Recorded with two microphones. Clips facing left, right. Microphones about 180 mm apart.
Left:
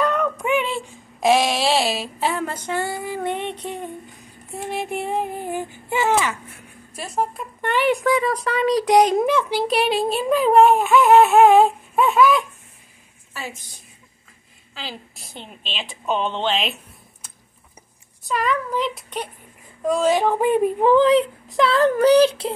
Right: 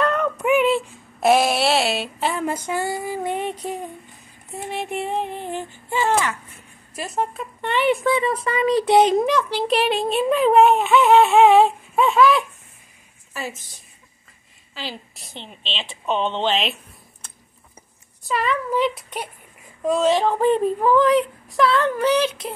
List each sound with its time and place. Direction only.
0.0 s a sound: centre (ahead or behind)
4.6 s child singing: centre (ahead or behind)
7.0 s speech: centre (ahead or behind)
17.2 s a sound: centre (ahead or behind)
18.3 s speech: centre (ahead or behind)
19.8 s child singing: centre (ahead or behind)
20.8 s speech: 30° left (ahead or behind)
21.7 s speech: 35° left (ahead or behind)